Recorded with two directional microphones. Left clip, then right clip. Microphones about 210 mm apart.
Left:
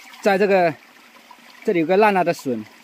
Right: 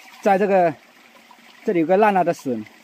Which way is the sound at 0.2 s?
10° left (ahead or behind).